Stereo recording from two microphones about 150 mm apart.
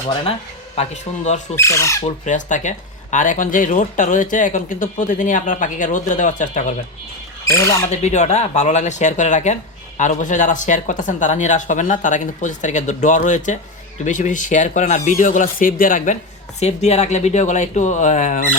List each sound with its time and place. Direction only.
0.8 s speech: 50° left (ahead or behind)
1.5 s speech: 20° left (ahead or behind)
2.2 s speech: 55° left (ahead or behind)
7.4 s speech: 20° left (ahead or behind)
8.0 s speech: 50° left (ahead or behind)
16.6 s speech: 45° left (ahead or behind)